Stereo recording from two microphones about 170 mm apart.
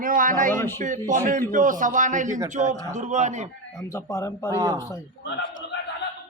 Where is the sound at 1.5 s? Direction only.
50° right (ahead or behind).